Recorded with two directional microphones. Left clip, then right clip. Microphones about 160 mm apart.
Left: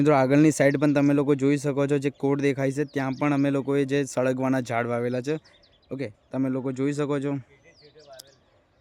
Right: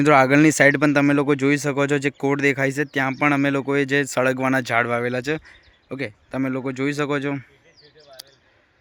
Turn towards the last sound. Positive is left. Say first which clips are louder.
# right 4 dB
turn(degrees=10)  # may be behind; listen again after turning